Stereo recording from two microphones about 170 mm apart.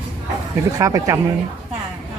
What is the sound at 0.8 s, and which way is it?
Speech, 20° right (ahead or behind).